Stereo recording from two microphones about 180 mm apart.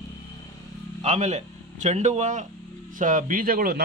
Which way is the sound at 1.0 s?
40° right (ahead or behind).